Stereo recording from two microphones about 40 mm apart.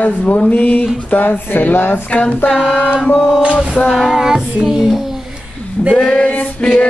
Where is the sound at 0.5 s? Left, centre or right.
Left.